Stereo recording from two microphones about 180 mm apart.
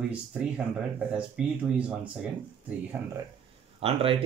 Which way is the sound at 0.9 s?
5° right (ahead or behind).